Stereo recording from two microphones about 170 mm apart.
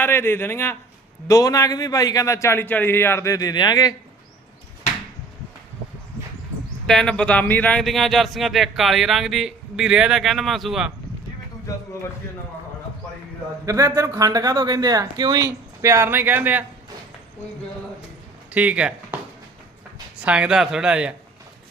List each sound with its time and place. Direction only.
0.0 s a man's voice: 15° left (ahead or behind)
6.8 s speech: 5° left (ahead or behind)
11.7 s a man's voice: 20° left (ahead or behind)
13.7 s speech: 20° right (ahead or behind)
18.5 s speech: 10° right (ahead or behind)
20.1 s speech: 5° right (ahead or behind)